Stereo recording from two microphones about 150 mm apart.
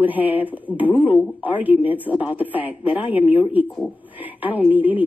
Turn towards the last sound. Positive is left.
turn(degrees=-10)  # may be behind; listen again after turning